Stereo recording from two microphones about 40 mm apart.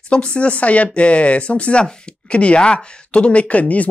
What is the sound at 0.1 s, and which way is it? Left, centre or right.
Speech, left.